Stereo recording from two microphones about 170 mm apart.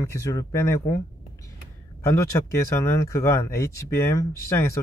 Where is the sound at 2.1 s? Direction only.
20° left (ahead or behind).